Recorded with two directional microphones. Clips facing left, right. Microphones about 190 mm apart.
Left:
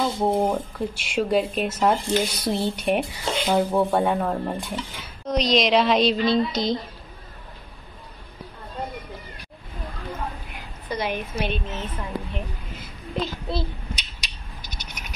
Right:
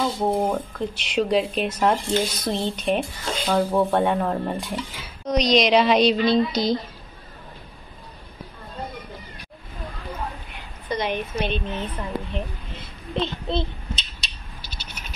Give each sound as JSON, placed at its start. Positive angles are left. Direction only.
{"t": 0.0, "sound": "speech", "side_deg": 10}
{"t": 3.7, "sound": "a woman's voice", "side_deg": 5}
{"t": 10.9, "sound": "speech", "side_deg": 5}
{"t": 14.6, "sound": "a sound", "side_deg": -30}